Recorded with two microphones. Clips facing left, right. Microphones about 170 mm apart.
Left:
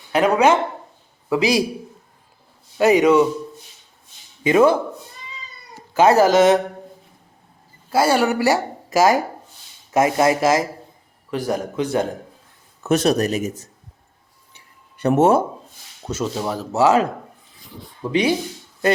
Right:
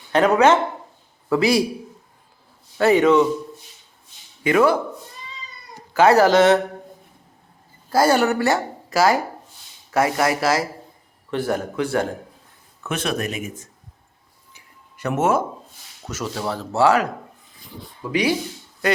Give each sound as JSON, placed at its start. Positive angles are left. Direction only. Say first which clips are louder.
{"t": 0.1, "sound": "a man's voice", "louder": "even", "side_deg": 10}
{"t": 2.7, "sound": "a man's voice", "louder": "left 1 dB", "side_deg": 15}
{"t": 4.4, "sound": "speech", "louder": "left 2 dB", "side_deg": 25}
{"t": 5.9, "sound": "speech", "louder": "even", "side_deg": 20}
{"t": 7.9, "sound": "a man's voice", "louder": "even", "side_deg": 5}
{"t": 12.8, "sound": "speech", "louder": "left 7 dB", "side_deg": 40}
{"t": 14.5, "sound": "a sound", "louder": "right 1 dB", "side_deg": 30}
{"t": 16.0, "sound": "speech", "louder": "left 3 dB", "side_deg": 25}
{"t": 18.1, "sound": "speech", "louder": "left 2 dB", "side_deg": 25}